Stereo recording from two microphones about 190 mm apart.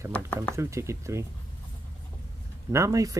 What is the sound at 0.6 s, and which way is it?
Speech, 15° right (ahead or behind).